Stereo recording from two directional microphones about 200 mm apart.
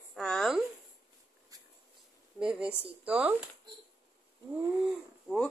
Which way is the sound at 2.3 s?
5° right (ahead or behind).